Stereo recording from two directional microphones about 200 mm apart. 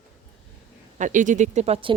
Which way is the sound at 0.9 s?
40° right (ahead or behind).